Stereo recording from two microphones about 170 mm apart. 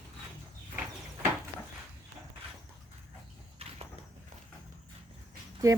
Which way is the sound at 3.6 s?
35° right (ahead or behind).